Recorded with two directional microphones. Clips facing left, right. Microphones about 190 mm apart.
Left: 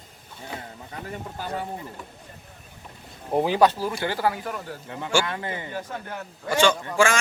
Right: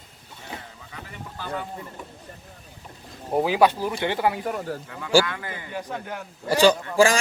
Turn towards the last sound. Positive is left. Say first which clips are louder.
# right 3 dB
turn(degrees=-35)  # may be behind; listen again after turning